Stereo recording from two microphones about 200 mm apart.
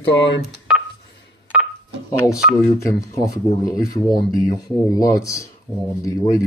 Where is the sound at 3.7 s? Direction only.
15° left (ahead or behind).